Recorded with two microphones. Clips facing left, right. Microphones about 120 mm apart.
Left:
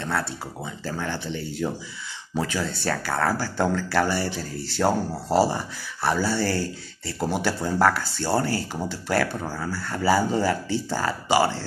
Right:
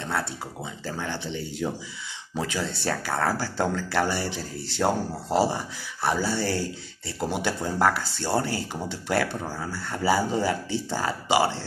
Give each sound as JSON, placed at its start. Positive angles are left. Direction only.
{"t": 0.8, "sound": "speech", "side_deg": -20}
{"t": 4.8, "sound": "speech", "side_deg": 5}
{"t": 6.0, "sound": "speech", "side_deg": -20}